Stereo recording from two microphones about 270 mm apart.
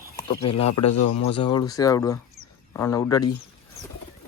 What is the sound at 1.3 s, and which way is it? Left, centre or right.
Speech, centre.